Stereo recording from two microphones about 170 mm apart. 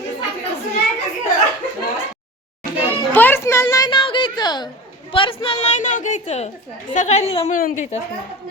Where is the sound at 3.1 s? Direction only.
10° left (ahead or behind); by 7.5 s 35° left (ahead or behind).